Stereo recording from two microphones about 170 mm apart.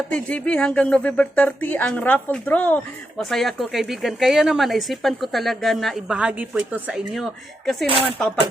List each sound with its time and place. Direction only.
0.1 s speech: 5° left (ahead or behind)